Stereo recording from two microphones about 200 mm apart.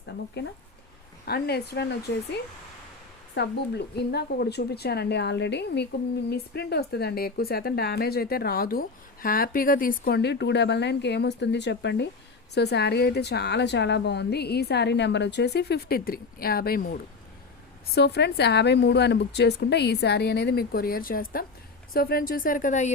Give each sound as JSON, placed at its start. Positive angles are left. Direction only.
{"t": 0.0, "sound": "a woman's voice", "side_deg": 60}